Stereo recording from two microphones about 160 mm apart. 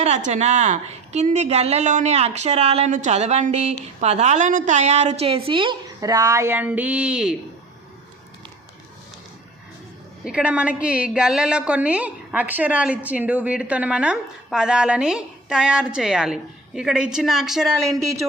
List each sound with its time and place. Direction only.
0.0 s a woman's voice: 45° right (ahead or behind); by 7.3 s 5° right (ahead or behind)
10.2 s a woman's voice: 5° right (ahead or behind)